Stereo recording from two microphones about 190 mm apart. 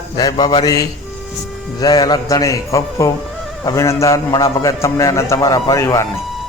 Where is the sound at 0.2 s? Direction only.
20° left (ahead or behind).